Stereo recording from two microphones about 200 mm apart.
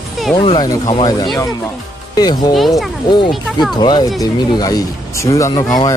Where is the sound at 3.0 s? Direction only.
25° left (ahead or behind).